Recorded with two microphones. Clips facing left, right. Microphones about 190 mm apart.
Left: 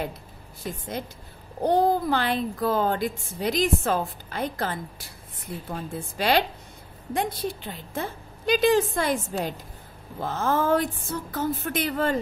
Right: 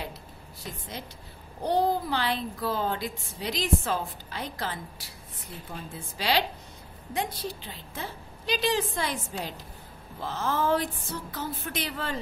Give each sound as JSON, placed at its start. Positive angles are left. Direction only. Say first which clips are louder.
{"t": 1.6, "sound": "a child's voice", "louder": "left 4 dB", "side_deg": 50}